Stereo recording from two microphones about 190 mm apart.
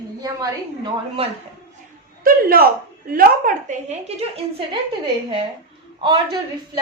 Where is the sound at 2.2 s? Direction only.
50° right (ahead or behind).